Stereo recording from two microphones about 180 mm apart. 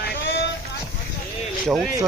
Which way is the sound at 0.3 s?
75° left (ahead or behind).